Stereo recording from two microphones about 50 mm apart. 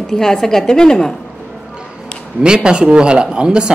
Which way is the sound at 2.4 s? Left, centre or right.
Centre.